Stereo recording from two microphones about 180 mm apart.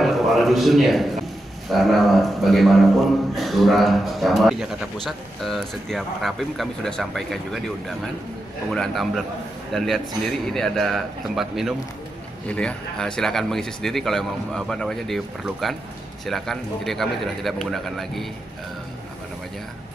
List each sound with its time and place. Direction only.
0.0 s a man's voice: centre (ahead or behind)